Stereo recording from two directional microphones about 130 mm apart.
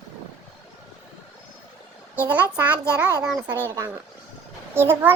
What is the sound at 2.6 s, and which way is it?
Speech, 10° right (ahead or behind).